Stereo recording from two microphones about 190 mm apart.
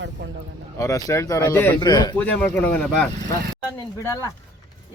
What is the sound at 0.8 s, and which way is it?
Speech, 15° left (ahead or behind).